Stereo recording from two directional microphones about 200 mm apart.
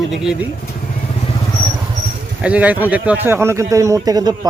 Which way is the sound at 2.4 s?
5° right (ahead or behind).